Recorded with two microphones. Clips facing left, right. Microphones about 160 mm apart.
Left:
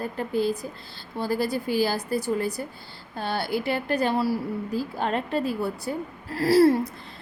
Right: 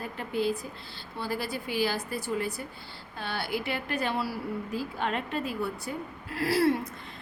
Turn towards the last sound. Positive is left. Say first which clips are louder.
# left 7 dB
turn(degrees=35)  # may be behind; listen again after turning